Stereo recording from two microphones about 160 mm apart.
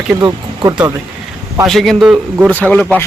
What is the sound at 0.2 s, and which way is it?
Speech, 25° right (ahead or behind).